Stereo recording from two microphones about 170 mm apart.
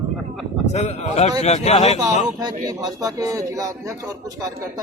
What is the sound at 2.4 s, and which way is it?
A man's voice, 25° right (ahead or behind).